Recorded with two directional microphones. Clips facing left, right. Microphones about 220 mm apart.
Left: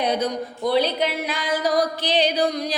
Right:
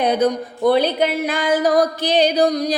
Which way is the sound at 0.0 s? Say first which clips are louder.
Right 5 dB; 55° right (ahead or behind).